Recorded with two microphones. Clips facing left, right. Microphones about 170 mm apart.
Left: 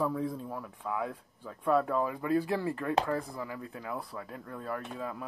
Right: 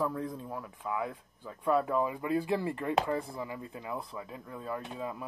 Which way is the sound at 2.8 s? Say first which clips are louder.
Even; 20° right (ahead or behind).